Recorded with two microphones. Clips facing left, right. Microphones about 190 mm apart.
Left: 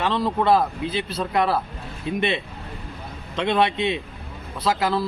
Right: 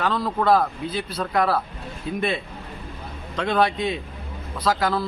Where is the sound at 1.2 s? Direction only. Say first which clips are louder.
Even; 5° left (ahead or behind).